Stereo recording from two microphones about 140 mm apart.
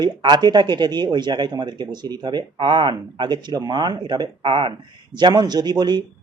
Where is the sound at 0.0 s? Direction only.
30° right (ahead or behind).